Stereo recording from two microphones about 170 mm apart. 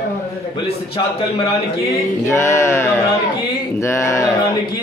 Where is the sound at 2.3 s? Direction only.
15° left (ahead or behind).